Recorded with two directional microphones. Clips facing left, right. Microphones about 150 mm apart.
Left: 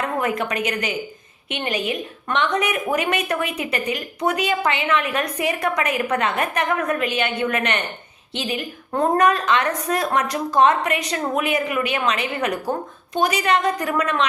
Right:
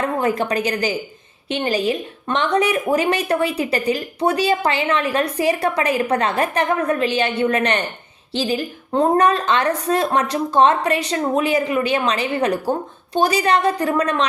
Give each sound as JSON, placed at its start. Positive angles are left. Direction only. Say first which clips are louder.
{"t": 0.0, "sound": "a woman's voice", "louder": "right 3 dB", "side_deg": -30}